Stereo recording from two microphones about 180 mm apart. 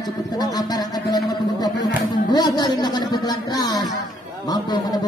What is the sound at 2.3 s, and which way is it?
A man's voice, 25° left (ahead or behind).